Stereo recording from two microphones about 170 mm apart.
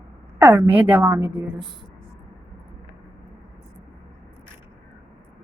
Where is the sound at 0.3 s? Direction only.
15° right (ahead or behind).